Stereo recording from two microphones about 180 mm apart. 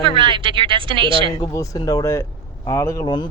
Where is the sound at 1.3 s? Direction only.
20° left (ahead or behind).